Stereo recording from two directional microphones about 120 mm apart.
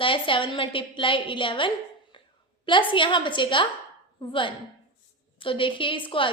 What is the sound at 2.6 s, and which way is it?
A woman's voice, 45° left (ahead or behind).